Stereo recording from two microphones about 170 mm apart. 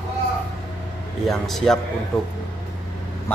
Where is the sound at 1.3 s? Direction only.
Centre (ahead or behind).